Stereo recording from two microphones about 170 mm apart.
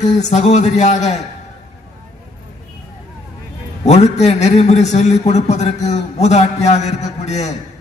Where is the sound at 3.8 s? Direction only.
40° left (ahead or behind).